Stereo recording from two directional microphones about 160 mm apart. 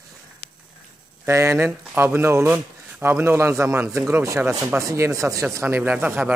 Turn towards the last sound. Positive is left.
turn(degrees=-10)  # may be behind; listen again after turning